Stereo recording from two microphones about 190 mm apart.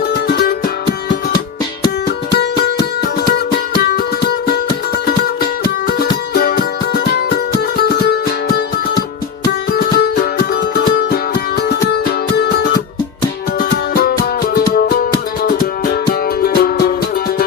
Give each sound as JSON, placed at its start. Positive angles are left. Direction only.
{"t": 0.1, "sound": "music", "side_deg": 55}
{"t": 2.3, "sound": "music", "side_deg": 60}
{"t": 3.8, "sound": "music", "side_deg": 55}
{"t": 5.6, "sound": "music", "side_deg": 55}